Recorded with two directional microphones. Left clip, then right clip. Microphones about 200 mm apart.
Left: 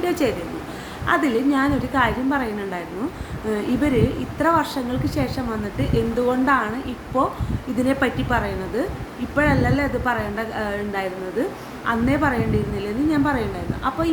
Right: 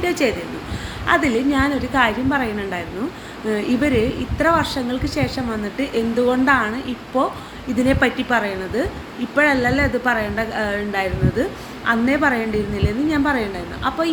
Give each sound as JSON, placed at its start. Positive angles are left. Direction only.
{"t": 0.0, "sound": "a woman's voice", "side_deg": 20}